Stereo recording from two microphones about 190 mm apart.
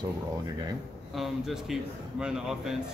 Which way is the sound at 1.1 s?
Centre (ahead or behind).